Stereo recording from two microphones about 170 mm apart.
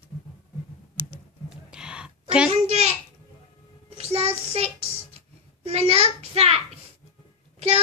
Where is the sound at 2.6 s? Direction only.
40° right (ahead or behind).